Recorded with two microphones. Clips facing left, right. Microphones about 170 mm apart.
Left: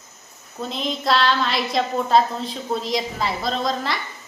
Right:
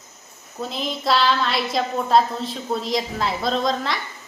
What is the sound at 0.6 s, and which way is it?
A woman's voice, centre (ahead or behind).